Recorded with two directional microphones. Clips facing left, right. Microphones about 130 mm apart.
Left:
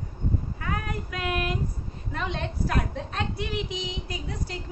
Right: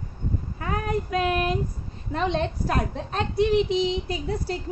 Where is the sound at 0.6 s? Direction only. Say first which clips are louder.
Right 5 dB; 30° right (ahead or behind).